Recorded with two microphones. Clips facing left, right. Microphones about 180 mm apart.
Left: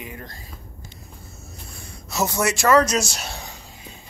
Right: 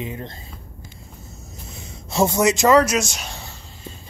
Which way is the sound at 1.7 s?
20° right (ahead or behind).